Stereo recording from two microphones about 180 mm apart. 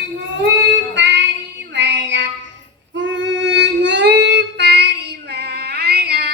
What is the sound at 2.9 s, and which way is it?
Singing, 90° right.